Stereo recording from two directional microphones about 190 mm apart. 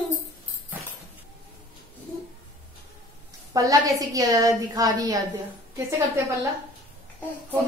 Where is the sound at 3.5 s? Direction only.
20° right (ahead or behind).